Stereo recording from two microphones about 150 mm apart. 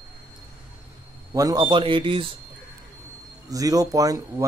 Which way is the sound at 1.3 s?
25° right (ahead or behind).